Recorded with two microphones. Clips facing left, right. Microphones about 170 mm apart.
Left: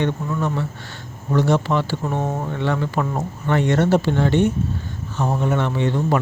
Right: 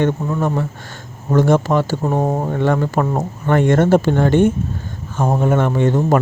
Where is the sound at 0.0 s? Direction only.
45° right (ahead or behind).